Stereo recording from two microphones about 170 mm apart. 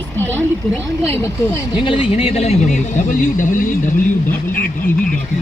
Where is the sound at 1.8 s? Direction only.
30° left (ahead or behind); by 5.1 s 55° left (ahead or behind).